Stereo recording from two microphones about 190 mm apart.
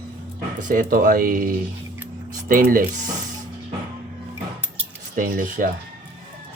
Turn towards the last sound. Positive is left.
turn(degrees=-45)  # may be behind; listen again after turning